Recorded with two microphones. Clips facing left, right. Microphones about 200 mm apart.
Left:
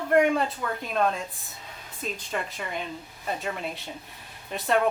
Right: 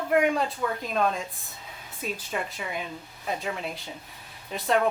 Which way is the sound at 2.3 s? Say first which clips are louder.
Left 1 dB; centre (ahead or behind).